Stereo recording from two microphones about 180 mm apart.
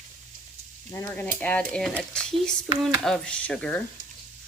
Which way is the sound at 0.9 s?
10° left (ahead or behind).